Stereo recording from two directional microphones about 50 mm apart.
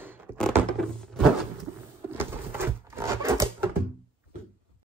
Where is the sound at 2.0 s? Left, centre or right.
Right.